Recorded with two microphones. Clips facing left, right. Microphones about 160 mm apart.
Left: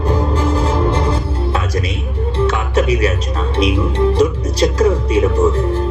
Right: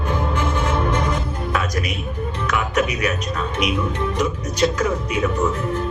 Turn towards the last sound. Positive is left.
turn(degrees=30)  # may be behind; listen again after turning